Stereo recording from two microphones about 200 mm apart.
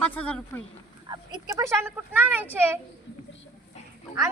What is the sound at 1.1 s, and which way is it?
Speech, 15° right (ahead or behind).